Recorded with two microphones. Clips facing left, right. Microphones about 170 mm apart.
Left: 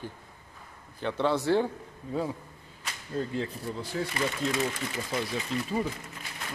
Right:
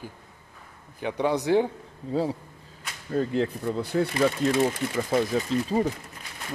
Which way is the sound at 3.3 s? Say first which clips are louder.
Right 7 dB; 65° right (ahead or behind).